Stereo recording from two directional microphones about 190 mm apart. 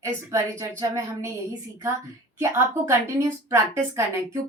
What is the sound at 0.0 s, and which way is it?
A woman's voice, 15° right (ahead or behind).